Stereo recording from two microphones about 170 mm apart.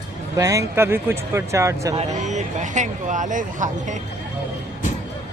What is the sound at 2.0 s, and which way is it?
Speech, 45° right (ahead or behind).